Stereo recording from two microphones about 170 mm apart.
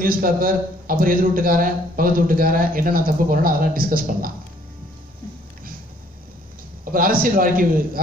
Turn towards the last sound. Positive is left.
turn(degrees=-55)  # may be behind; listen again after turning